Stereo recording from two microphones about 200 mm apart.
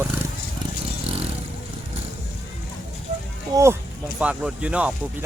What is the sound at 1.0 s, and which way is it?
Vehicle, 30° right (ahead or behind).